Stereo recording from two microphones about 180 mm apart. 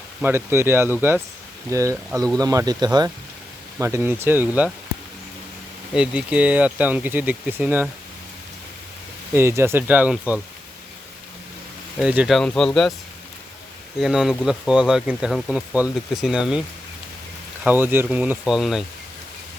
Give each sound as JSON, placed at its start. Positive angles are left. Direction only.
{"t": 0.2, "sound": "speech", "side_deg": -15}
{"t": 5.9, "sound": "speech", "side_deg": -5}
{"t": 9.3, "sound": "speech", "side_deg": -15}
{"t": 11.9, "sound": "speech", "side_deg": -5}
{"t": 14.0, "sound": "speech", "side_deg": 0}